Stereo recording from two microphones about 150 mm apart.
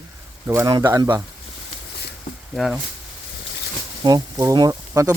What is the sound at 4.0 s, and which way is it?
Speech, 25° right (ahead or behind).